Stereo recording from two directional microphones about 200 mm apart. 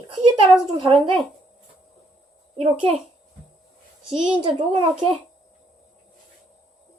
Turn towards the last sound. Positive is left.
turn(degrees=-25)  # may be behind; listen again after turning